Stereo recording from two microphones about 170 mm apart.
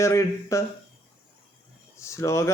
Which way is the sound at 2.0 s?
15° left (ahead or behind).